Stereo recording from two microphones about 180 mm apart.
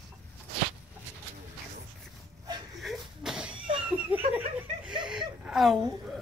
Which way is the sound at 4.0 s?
10° right (ahead or behind).